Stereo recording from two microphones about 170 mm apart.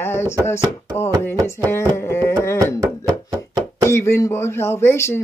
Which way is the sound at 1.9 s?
15° left (ahead or behind).